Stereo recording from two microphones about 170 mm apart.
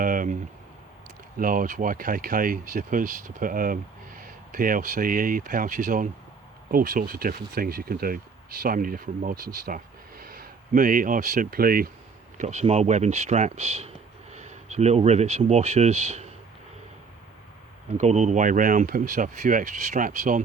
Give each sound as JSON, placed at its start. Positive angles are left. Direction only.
{"t": 0.0, "sound": "a sound", "side_deg": -55}
{"t": 1.4, "sound": "speech", "side_deg": -55}
{"t": 12.4, "sound": "speech", "side_deg": -45}
{"t": 17.9, "sound": "speech", "side_deg": -40}